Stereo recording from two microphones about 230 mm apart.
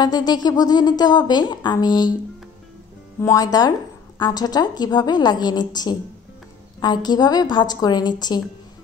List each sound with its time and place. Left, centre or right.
0.0 s speech: centre
3.2 s speech: centre